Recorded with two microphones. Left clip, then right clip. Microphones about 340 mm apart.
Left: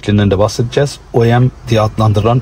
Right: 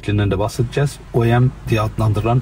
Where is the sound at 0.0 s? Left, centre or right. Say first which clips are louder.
Left 8 dB; left.